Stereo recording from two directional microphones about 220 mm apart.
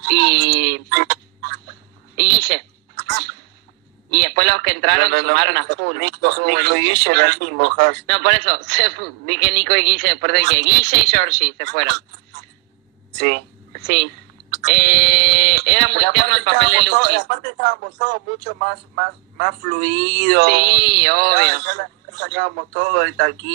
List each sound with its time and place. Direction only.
0.0 s music: 50° right (ahead or behind)
2.1 s a sound: 50° right (ahead or behind)
4.1 s speech: 45° right (ahead or behind)
14.6 s speech: 45° right (ahead or behind)